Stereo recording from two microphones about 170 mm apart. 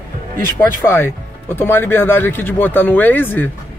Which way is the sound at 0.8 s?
15° left (ahead or behind).